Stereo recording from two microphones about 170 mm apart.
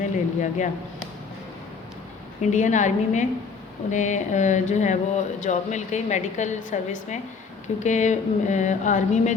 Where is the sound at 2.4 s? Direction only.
45° left (ahead or behind).